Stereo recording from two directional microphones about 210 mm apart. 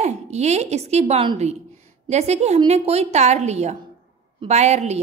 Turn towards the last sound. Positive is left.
turn(degrees=-30)  # may be behind; listen again after turning